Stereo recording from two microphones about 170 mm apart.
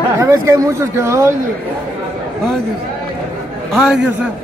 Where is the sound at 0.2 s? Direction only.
20° right (ahead or behind).